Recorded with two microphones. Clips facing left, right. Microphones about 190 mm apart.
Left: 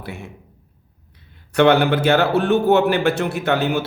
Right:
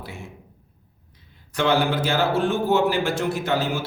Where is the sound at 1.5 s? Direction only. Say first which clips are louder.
Left 6 dB; 65° left (ahead or behind).